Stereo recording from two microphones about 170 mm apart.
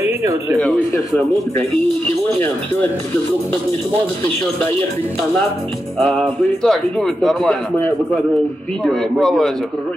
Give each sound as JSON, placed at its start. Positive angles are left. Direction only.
{"t": 0.0, "sound": "speech", "side_deg": -20}
{"t": 0.6, "sound": "speech", "side_deg": 5}
{"t": 5.9, "sound": "speech", "side_deg": 0}
{"t": 8.8, "sound": "speech", "side_deg": 5}